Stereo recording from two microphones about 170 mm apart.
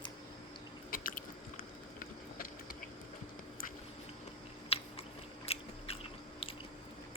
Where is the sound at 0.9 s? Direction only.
55° left (ahead or behind).